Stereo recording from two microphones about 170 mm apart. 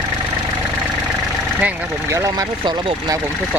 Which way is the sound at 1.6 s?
10° right (ahead or behind).